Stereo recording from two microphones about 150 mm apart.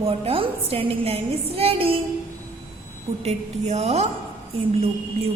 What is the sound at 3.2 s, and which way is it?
Speech, 45° right (ahead or behind).